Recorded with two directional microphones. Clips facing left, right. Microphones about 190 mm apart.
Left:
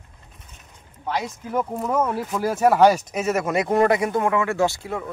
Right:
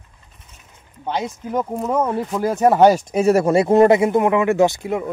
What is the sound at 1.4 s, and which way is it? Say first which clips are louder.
Speech: right 3 dB; 20° right (ahead or behind).